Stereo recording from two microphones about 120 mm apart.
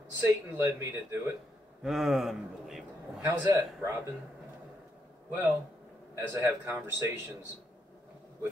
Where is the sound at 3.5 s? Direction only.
25° right (ahead or behind).